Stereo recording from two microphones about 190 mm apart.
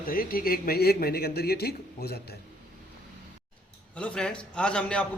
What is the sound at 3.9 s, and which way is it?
A man's voice, 5° left (ahead or behind).